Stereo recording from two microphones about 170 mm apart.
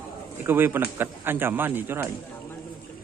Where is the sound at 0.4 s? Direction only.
10° right (ahead or behind).